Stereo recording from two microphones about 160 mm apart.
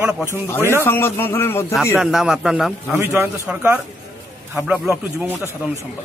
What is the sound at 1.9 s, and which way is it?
Speech, 5° right (ahead or behind).